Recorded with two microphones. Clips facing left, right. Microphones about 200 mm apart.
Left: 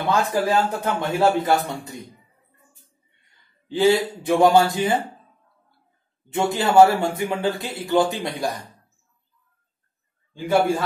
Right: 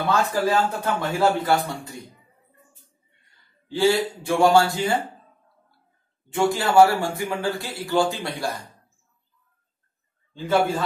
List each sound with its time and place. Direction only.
0.1 s a man's voice: 15° left (ahead or behind)
3.6 s a man's voice: 20° left (ahead or behind)
6.3 s a man's voice: 20° left (ahead or behind)